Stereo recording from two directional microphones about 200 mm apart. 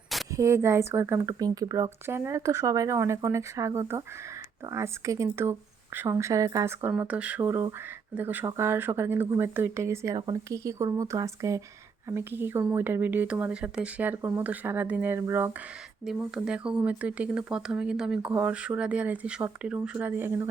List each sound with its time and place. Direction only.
0.3 s speech: 15° right (ahead or behind)